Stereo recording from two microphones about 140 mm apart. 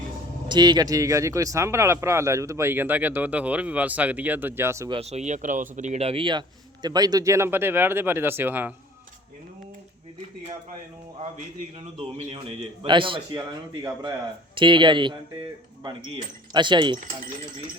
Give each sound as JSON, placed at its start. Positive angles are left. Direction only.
{"t": 0.4, "sound": "speech", "side_deg": -30}
{"t": 4.9, "sound": "speech", "side_deg": -45}
{"t": 12.8, "sound": "speech", "side_deg": -35}
{"t": 13.8, "sound": "speech", "side_deg": -20}
{"t": 14.5, "sound": "speech", "side_deg": -35}